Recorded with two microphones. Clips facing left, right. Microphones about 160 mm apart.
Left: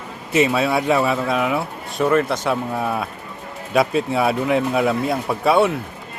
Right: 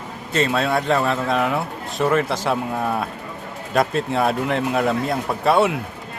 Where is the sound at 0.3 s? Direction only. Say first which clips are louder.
Left 2 dB; 5° left (ahead or behind).